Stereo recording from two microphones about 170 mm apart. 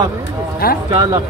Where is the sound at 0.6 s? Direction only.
65° left (ahead or behind).